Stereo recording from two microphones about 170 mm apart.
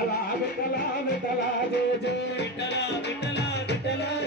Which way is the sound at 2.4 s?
90° left.